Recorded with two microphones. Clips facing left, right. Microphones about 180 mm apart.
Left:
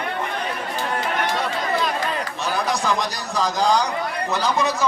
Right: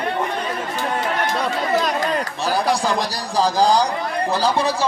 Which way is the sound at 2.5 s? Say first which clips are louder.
Right 3 dB; 30° right (ahead or behind).